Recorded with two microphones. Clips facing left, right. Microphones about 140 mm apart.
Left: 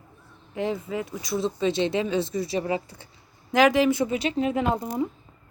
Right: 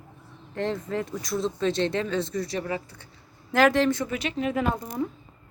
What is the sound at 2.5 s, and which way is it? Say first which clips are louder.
Speech: left 4 dB; 15° left (ahead or behind).